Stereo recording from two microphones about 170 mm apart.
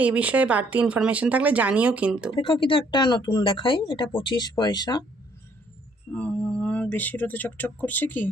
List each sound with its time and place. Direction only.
0.0 s speech: 10° right (ahead or behind)
2.3 s speech: 30° left (ahead or behind)
6.1 s speech: 5° left (ahead or behind)